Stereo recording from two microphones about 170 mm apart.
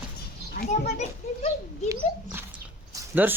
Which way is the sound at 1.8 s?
15° right (ahead or behind).